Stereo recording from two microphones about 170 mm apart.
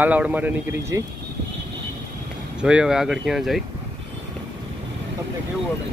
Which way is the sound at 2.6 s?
5° right (ahead or behind).